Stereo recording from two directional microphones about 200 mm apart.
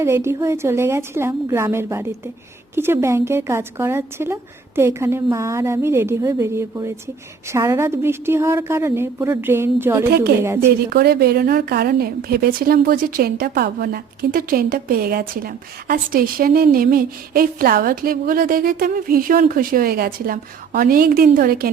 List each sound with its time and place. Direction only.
0.0 s a woman's voice: 15° right (ahead or behind)
10.8 s a woman's voice: 50° right (ahead or behind)